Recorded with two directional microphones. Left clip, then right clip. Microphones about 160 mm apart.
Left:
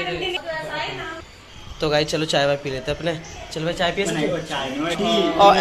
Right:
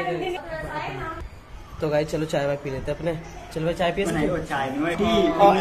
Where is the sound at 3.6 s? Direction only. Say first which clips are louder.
Left 1 dB; 15° right (ahead or behind).